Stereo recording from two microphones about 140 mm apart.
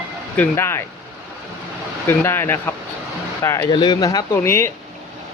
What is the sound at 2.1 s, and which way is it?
Speech, 15° left (ahead or behind).